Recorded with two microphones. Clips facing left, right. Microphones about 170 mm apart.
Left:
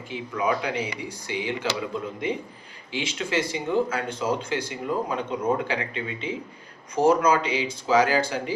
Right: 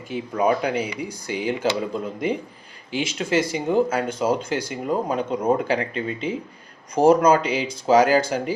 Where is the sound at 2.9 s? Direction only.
40° right (ahead or behind).